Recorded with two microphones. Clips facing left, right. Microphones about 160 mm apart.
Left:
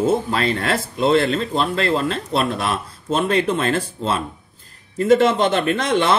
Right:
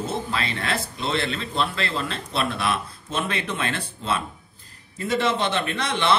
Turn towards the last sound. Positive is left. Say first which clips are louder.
# left 5 dB
turn(degrees=45)  # may be behind; listen again after turning